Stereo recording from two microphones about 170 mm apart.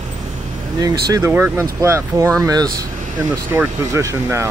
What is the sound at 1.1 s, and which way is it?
Speech, 15° right (ahead or behind).